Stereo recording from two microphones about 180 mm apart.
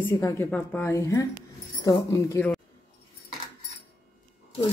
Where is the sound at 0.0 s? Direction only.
15° left (ahead or behind).